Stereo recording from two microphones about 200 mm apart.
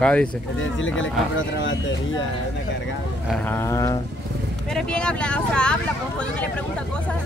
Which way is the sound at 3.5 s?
15° left (ahead or behind).